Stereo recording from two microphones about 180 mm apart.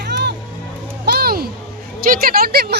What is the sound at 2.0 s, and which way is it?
Speech, 55° right (ahead or behind).